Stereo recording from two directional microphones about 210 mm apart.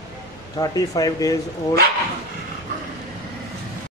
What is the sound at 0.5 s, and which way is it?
Speech, 15° left (ahead or behind).